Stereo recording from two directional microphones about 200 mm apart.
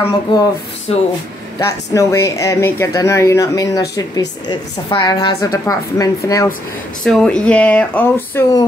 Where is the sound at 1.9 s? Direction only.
15° left (ahead or behind).